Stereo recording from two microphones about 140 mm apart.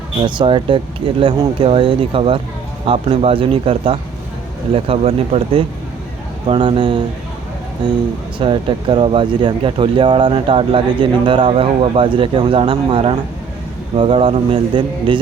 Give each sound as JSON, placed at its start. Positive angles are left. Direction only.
{"t": 0.2, "sound": "speech", "side_deg": -35}
{"t": 8.4, "sound": "speech", "side_deg": -35}